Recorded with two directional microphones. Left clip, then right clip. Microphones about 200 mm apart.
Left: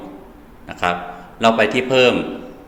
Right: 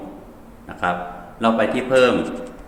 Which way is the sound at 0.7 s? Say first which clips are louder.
Left 2 dB; 10° left (ahead or behind).